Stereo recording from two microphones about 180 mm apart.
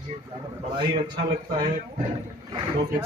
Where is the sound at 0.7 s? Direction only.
25° right (ahead or behind).